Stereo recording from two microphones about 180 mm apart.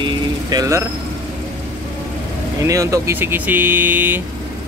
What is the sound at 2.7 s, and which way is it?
Speech, 15° right (ahead or behind).